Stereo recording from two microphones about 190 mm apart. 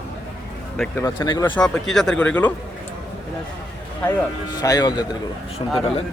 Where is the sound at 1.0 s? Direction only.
20° left (ahead or behind).